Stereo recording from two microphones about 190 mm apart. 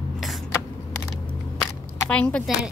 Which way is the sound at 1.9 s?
10° left (ahead or behind).